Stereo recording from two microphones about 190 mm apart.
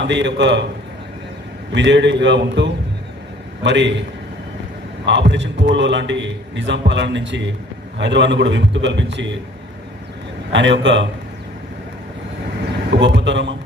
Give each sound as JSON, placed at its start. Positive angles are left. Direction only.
{"t": 0.0, "sound": "a man's voice", "side_deg": -70}
{"t": 1.7, "sound": "a man's voice", "side_deg": -70}
{"t": 5.0, "sound": "a man's voice", "side_deg": -70}
{"t": 10.5, "sound": "a man's voice", "side_deg": -75}
{"t": 13.0, "sound": "a man's voice", "side_deg": -70}